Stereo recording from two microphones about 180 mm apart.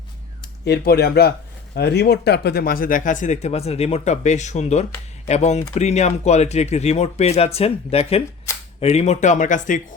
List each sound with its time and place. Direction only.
0.6 s speech: 65° left (ahead or behind); by 9.8 s 45° left (ahead or behind)